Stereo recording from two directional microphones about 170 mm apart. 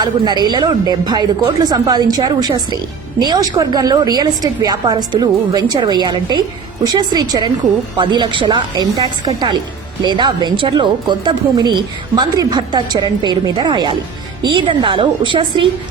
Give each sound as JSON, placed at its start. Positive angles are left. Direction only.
{"t": 0.0, "sound": "a woman's voice", "side_deg": -25}